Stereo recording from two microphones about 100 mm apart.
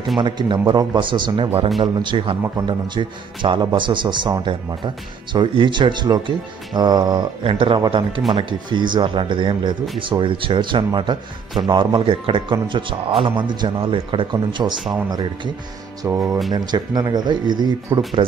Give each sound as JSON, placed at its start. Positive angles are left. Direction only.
{"t": 0.2, "sound": "speech", "side_deg": -50}
{"t": 7.4, "sound": "speech", "side_deg": -60}
{"t": 16.1, "sound": "speech", "side_deg": -30}
{"t": 16.5, "sound": "speech", "side_deg": -40}